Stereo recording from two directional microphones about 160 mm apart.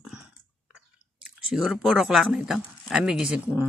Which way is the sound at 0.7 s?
5° right (ahead or behind).